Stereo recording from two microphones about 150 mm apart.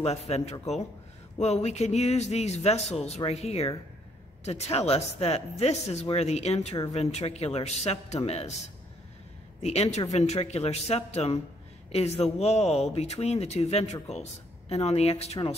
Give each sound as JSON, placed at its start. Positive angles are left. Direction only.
{"t": 0.0, "sound": "speech", "side_deg": 45}
{"t": 9.6, "sound": "speech", "side_deg": 45}